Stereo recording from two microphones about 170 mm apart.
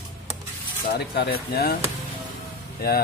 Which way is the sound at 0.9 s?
70° left (ahead or behind).